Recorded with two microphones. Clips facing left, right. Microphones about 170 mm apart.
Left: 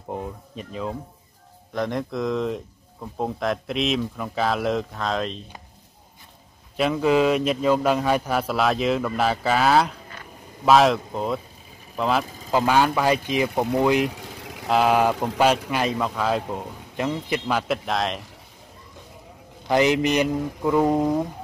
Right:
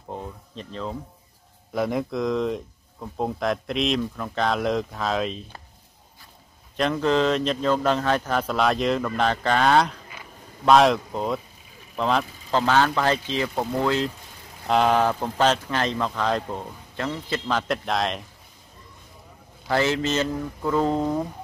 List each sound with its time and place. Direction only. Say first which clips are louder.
0.1 s speech: left 3 dB; 10° left (ahead or behind)
1.7 s speech: right 1 dB; 5° right (ahead or behind)
6.8 s speech: left 2 dB; 5° left (ahead or behind)
14.1 s vehicle: left 8 dB; 80° left
14.7 s speech: left 1 dB; 5° left (ahead or behind)
19.7 s speech: left 3 dB; 15° left (ahead or behind)